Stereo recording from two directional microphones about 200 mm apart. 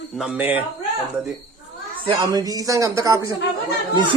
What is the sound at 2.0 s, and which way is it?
Speech, 20° right (ahead or behind).